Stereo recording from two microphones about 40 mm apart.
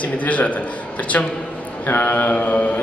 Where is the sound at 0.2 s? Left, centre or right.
Left.